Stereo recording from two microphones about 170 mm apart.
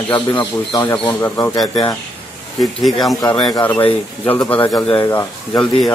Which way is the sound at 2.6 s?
Centre (ahead or behind).